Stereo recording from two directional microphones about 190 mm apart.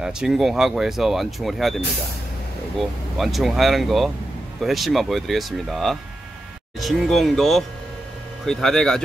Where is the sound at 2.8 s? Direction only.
Centre (ahead or behind).